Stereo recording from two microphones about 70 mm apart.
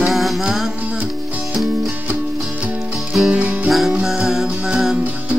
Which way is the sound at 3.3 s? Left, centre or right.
Centre.